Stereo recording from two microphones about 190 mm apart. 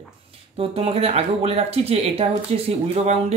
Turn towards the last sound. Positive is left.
turn(degrees=-35)  # may be behind; listen again after turning